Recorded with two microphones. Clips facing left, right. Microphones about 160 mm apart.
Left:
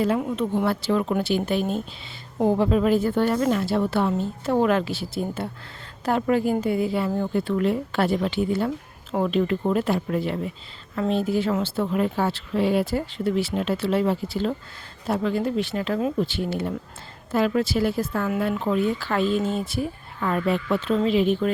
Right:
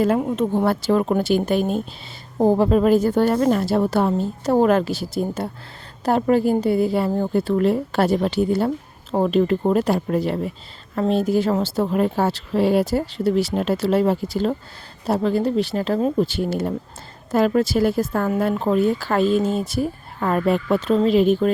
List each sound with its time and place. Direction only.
0.0 s speech: 45° right (ahead or behind)